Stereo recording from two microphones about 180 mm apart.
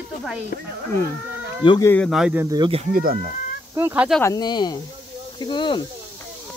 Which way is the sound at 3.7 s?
10° right (ahead or behind).